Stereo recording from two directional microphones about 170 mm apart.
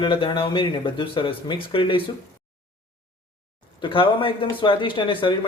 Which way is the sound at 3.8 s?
30° left (ahead or behind).